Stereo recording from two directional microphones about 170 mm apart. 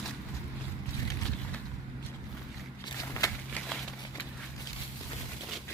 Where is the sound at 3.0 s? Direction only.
15° left (ahead or behind).